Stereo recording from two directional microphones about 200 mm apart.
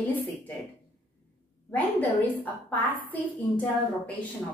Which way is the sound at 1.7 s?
10° left (ahead or behind).